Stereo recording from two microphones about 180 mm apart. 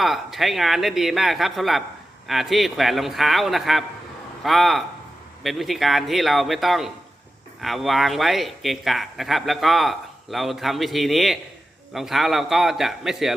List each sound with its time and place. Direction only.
0.0 s speech: centre (ahead or behind)